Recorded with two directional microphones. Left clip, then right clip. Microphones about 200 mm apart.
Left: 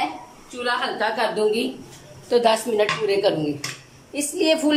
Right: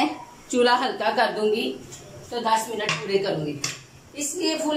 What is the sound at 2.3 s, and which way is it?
Speech, 55° left (ahead or behind).